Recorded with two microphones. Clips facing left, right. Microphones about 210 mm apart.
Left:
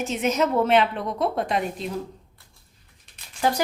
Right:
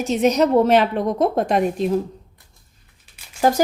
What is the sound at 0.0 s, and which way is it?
A woman's voice, 35° right (ahead or behind).